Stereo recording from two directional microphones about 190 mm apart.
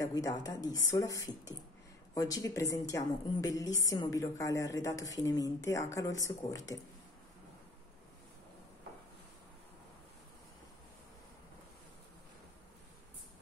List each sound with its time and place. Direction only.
0.0 s a woman's voice: 20° left (ahead or behind)